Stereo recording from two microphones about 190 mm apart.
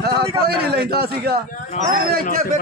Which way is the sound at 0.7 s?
55° right (ahead or behind).